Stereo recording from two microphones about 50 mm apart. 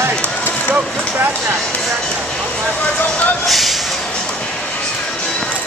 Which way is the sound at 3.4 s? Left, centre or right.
Centre.